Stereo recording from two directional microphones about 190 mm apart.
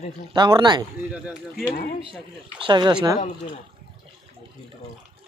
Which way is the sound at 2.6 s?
25° right (ahead or behind).